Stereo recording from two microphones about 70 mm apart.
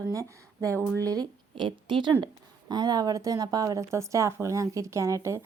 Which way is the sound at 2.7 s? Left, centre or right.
Right.